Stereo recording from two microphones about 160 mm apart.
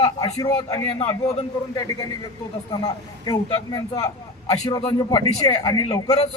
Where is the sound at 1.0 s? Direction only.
40° left (ahead or behind).